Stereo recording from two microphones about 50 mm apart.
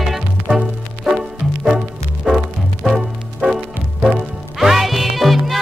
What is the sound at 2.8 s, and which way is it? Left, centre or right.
Music, centre.